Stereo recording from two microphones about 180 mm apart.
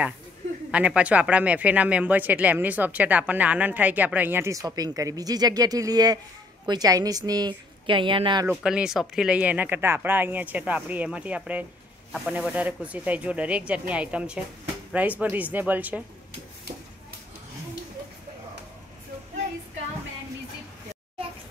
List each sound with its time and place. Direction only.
0.7 s a woman's voice: 5° right (ahead or behind); by 8.5 s 25° right (ahead or behind)
8.5 s speech: 5° right (ahead or behind)